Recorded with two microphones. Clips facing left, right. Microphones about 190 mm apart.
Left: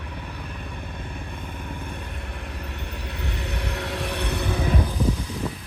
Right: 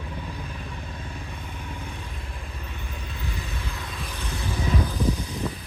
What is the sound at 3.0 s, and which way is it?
Vehicle, 70° left (ahead or behind).